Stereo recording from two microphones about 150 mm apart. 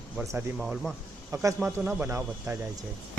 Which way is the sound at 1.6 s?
10° right (ahead or behind).